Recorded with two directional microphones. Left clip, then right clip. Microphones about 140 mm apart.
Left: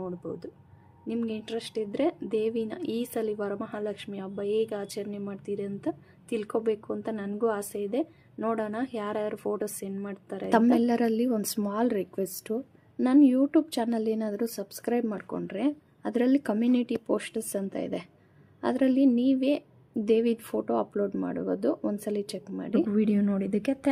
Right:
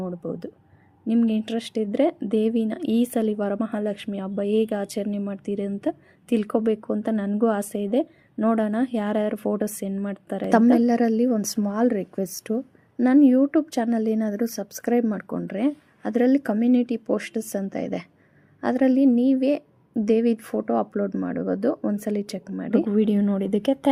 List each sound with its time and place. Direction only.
0.0 s speech: 40° right (ahead or behind)
10.7 s a woman's voice: 20° right (ahead or behind)
15.2 s speech: 40° right (ahead or behind)
16.0 s a woman's voice: 20° right (ahead or behind)
22.9 s a woman's voice: 15° right (ahead or behind)